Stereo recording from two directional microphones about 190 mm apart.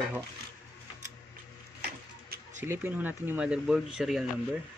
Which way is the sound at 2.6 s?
10° right (ahead or behind).